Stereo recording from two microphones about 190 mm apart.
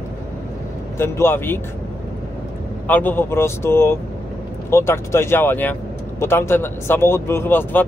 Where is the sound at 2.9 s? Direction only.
10° left (ahead or behind).